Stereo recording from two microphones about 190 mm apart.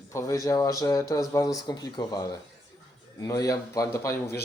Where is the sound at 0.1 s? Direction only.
15° left (ahead or behind).